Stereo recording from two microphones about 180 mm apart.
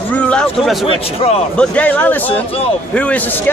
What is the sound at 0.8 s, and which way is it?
Speech, 35° left (ahead or behind).